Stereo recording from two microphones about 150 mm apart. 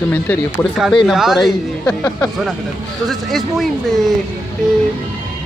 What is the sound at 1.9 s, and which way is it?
Speech, 20° left (ahead or behind).